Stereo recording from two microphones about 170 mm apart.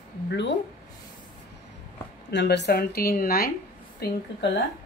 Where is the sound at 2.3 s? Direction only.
85° left; by 3.5 s 60° left (ahead or behind).